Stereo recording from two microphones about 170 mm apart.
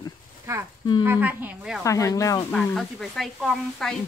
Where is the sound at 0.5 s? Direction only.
20° right (ahead or behind).